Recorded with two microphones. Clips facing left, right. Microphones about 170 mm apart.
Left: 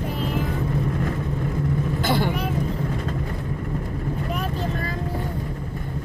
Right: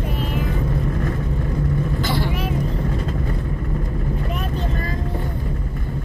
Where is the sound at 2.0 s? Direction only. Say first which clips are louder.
Left 4 dB; 55° left (ahead or behind).